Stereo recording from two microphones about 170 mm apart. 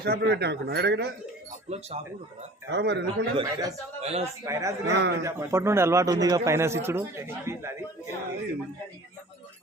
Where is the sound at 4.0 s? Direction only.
40° right (ahead or behind).